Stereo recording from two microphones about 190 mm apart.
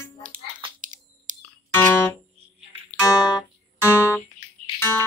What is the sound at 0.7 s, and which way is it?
Chewing, 40° right (ahead or behind).